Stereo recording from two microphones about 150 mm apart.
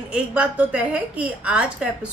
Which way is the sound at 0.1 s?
10° right (ahead or behind).